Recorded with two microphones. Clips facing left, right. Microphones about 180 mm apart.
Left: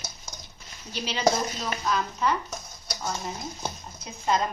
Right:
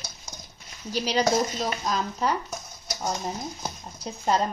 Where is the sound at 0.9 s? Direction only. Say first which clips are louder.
Right 7 dB; 40° right (ahead or behind).